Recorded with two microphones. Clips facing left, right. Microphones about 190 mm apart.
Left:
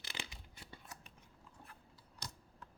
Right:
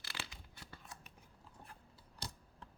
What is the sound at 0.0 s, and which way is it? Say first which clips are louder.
Scissors: left 1 dB; 20° left (ahead or behind).